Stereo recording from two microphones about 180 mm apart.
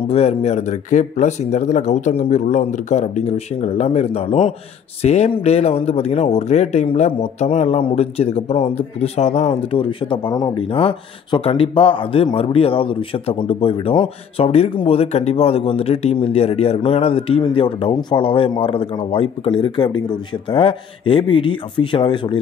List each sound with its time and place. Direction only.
0.1 s speech: 35° left (ahead or behind)